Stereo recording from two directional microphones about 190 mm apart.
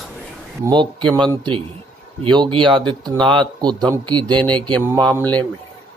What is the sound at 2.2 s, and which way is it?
Speech, 25° right (ahead or behind).